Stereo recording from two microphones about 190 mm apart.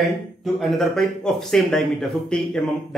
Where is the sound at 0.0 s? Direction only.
Centre (ahead or behind).